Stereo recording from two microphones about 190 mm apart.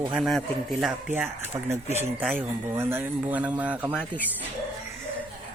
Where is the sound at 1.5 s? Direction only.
15° right (ahead or behind).